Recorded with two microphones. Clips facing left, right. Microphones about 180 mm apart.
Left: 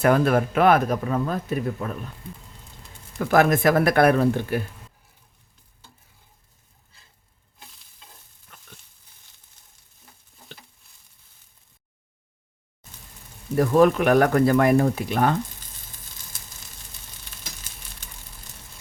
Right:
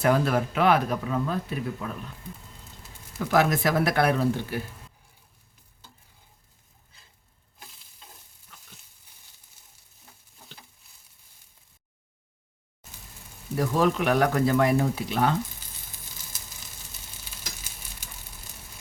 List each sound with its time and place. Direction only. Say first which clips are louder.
0.0 s speech: left 4 dB; 55° left (ahead or behind)
3.2 s speech: left 4 dB; 55° left (ahead or behind)
9.6 s frying: even; 10° right (ahead or behind)
13.6 s speech: left 6 dB; 55° left (ahead or behind)